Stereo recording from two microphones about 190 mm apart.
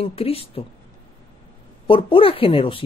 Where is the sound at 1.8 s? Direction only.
30° left (ahead or behind).